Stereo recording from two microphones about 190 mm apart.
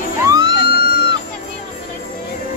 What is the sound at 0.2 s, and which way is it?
Music, 20° right (ahead or behind).